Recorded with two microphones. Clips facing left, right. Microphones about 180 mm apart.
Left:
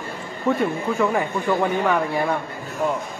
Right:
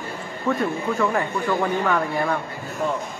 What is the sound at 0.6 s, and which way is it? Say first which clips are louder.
Speech: left 1 dB; 5° left (ahead or behind).